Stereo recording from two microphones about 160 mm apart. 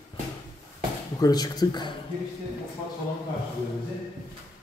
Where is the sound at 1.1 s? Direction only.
25° left (ahead or behind).